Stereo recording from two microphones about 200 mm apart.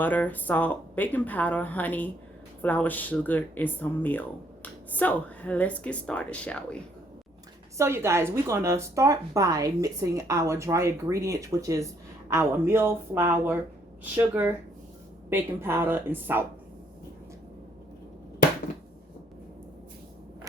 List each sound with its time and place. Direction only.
0.0 s speech: 10° left (ahead or behind)
7.8 s speech: 15° right (ahead or behind)